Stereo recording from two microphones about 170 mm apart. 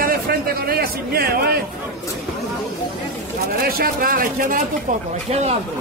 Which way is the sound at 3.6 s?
60° right (ahead or behind).